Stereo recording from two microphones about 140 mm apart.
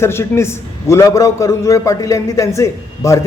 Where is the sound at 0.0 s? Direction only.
15° left (ahead or behind).